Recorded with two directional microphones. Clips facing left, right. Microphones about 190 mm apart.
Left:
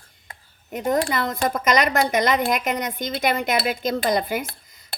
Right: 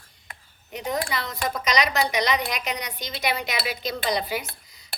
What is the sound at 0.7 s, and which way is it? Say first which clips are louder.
Speech: left 6 dB; 50° left (ahead or behind).